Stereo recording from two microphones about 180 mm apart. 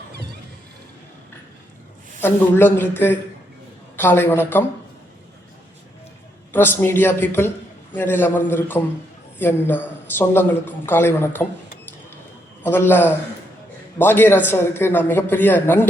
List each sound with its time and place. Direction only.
2.2 s a woman's voice: 10° left (ahead or behind)
6.5 s a woman's voice: 10° left (ahead or behind)
12.6 s a woman's voice: 10° left (ahead or behind)